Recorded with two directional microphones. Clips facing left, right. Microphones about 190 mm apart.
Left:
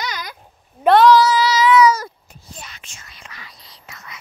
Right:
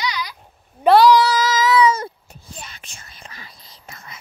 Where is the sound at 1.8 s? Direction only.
30° right (ahead or behind).